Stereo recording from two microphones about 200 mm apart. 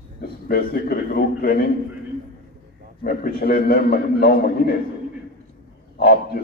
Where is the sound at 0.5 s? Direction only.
45° left (ahead or behind).